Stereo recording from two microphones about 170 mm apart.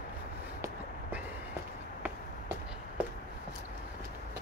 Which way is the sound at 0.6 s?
10° right (ahead or behind).